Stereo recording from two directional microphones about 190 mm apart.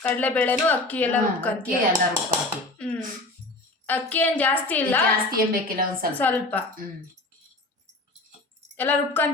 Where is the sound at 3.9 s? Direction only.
10° left (ahead or behind).